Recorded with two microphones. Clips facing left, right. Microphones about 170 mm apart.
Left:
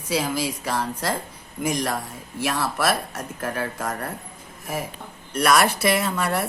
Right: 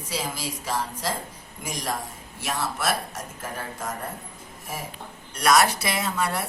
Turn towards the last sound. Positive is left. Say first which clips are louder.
# left 3 dB
turn(degrees=55)  # may be behind; listen again after turning